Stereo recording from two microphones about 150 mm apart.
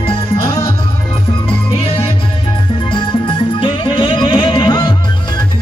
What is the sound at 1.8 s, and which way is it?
Music, 40° left (ahead or behind).